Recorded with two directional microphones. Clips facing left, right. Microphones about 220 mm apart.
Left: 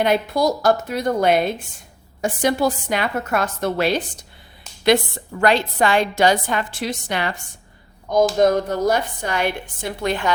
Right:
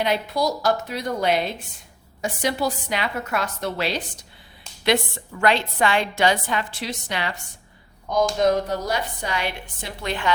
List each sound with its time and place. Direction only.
0.0 s a woman's voice: 50° left (ahead or behind)
5.4 s a woman's voice: 40° left (ahead or behind)
8.4 s a woman's voice: 50° left (ahead or behind)